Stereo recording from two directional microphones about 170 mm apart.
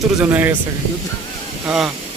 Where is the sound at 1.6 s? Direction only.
5° right (ahead or behind).